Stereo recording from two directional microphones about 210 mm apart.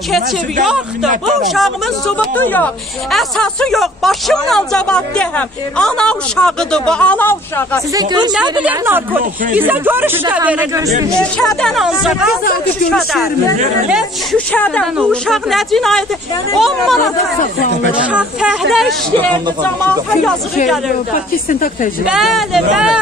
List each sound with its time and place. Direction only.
1.5 s speech: 5° left (ahead or behind)
7.9 s a woman's voice: 20° right (ahead or behind)
8.6 s speech: 10° right (ahead or behind)
11.3 s speech: centre (ahead or behind)
18.1 s speech: 5° right (ahead or behind)
21.5 s speech: 40° left (ahead or behind)
22.0 s speech: centre (ahead or behind)